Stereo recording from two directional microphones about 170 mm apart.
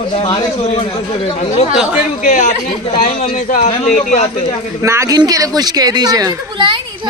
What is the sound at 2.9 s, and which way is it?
A man's voice, 35° left (ahead or behind).